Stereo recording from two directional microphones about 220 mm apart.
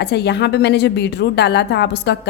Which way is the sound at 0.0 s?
50° left (ahead or behind).